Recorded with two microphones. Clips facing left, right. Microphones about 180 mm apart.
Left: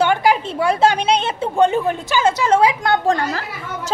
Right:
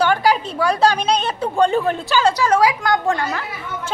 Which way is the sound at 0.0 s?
20° left (ahead or behind).